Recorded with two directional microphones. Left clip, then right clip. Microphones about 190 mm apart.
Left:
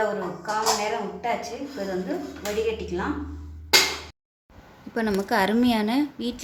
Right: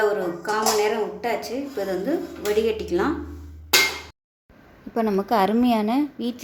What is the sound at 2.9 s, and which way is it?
Speech, 65° right (ahead or behind).